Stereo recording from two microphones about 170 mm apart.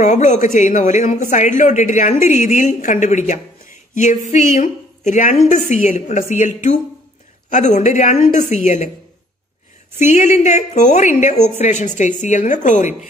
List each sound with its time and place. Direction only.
0.0 s speech: 45° left (ahead or behind)
3.9 s a sound: 45° left (ahead or behind)
4.3 s a woman's voice: 45° left (ahead or behind)
9.9 s speech: 45° left (ahead or behind)